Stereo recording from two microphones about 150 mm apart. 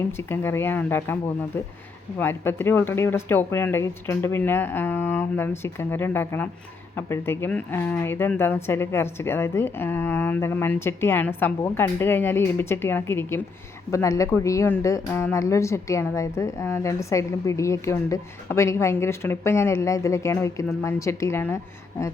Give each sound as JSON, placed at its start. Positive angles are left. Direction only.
{"t": 0.2, "sound": "speech", "side_deg": 15}